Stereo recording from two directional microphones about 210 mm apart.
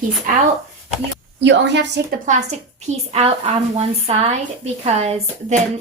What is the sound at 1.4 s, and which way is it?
Speech, 55° right (ahead or behind).